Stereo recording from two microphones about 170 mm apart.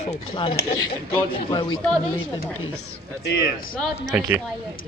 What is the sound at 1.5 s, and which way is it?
Speech, 30° left (ahead or behind).